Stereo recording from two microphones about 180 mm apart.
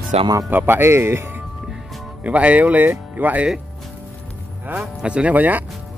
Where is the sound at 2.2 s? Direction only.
5° right (ahead or behind).